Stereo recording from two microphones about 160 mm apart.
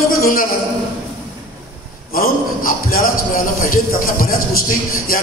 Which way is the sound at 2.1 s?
65° left (ahead or behind).